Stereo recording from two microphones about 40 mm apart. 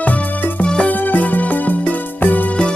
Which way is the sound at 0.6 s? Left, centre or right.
Left.